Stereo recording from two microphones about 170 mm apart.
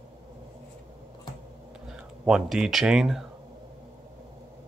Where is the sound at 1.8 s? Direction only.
5° right (ahead or behind).